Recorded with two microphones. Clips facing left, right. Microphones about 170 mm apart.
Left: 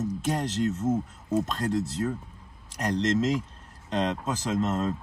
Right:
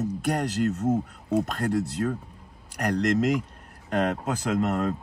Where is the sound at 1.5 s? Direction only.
60° right (ahead or behind).